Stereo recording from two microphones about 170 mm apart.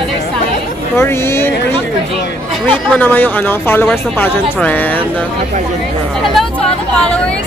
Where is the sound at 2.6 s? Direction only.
10° left (ahead or behind).